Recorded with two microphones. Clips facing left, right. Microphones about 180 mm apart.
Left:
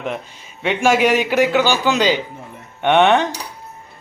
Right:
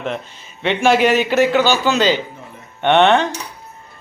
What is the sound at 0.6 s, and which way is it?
Speech, 10° left (ahead or behind).